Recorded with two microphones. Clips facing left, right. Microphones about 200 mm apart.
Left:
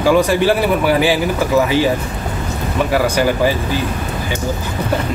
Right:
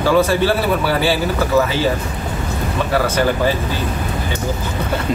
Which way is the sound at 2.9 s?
10° left (ahead or behind).